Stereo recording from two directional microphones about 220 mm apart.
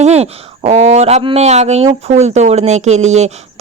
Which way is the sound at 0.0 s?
30° right (ahead or behind).